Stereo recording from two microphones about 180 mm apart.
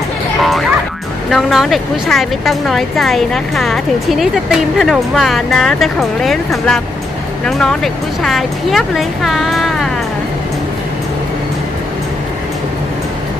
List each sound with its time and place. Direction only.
0.4 s music: centre (ahead or behind)
1.3 s a woman's voice: centre (ahead or behind)